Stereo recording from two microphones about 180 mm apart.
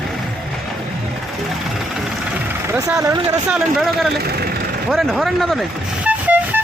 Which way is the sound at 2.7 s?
20° right (ahead or behind).